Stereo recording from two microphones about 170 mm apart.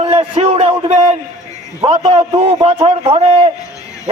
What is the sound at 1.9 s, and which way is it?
A man's voice, 35° right (ahead or behind).